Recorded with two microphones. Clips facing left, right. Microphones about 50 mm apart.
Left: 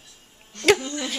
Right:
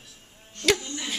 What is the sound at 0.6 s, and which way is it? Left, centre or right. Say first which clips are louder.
Speech: left 5 dB; left.